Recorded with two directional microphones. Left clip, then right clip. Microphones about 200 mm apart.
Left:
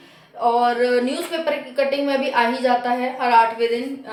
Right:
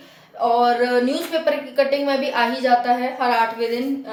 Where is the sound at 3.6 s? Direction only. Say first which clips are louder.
Left 2 dB; 20° left (ahead or behind).